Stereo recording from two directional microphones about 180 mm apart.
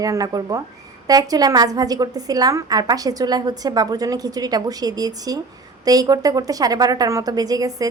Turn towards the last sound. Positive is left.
turn(degrees=-20)  # may be behind; listen again after turning